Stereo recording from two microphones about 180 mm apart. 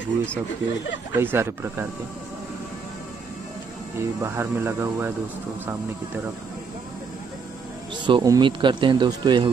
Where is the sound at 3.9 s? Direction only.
15° right (ahead or behind).